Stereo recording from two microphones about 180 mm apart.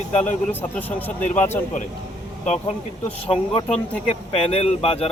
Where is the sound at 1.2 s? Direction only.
40° left (ahead or behind).